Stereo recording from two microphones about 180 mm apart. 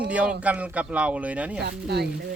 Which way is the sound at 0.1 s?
5° right (ahead or behind).